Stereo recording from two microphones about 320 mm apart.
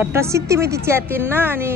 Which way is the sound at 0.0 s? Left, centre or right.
Centre.